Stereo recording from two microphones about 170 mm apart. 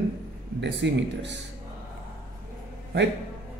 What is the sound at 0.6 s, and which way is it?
Speech, 90° right.